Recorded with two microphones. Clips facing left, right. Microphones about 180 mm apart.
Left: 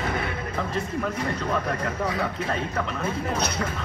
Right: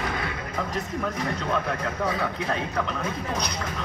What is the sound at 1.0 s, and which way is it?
Speech, 10° left (ahead or behind).